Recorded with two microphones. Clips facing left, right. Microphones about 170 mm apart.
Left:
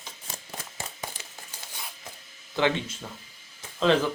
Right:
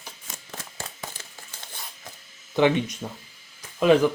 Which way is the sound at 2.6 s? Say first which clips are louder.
Right 5 dB; 15° right (ahead or behind).